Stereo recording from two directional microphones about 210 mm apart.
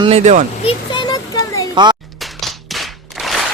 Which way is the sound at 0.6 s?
20° left (ahead or behind).